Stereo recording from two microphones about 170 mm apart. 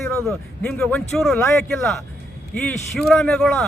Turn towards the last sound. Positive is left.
turn(degrees=0)  # may be behind; listen again after turning